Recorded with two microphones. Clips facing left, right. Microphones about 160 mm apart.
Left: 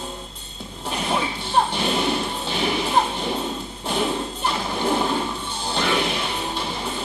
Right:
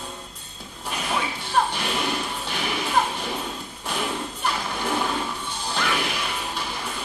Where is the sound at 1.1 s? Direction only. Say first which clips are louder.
Left 2 dB; 25° left (ahead or behind).